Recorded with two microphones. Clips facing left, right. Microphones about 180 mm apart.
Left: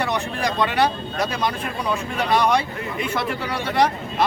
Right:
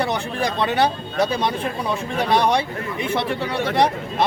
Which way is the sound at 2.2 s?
30° right (ahead or behind).